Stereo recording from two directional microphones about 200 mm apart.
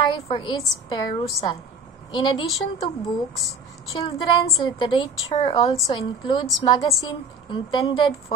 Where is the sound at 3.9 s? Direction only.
20° left (ahead or behind).